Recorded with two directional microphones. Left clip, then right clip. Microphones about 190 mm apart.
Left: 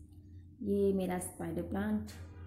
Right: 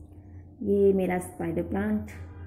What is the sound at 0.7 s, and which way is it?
A woman's voice, 10° left (ahead or behind).